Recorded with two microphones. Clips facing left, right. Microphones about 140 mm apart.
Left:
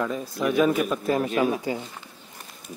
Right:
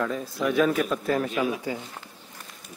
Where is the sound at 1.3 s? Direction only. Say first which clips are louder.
Left 3 dB; 40° left (ahead or behind).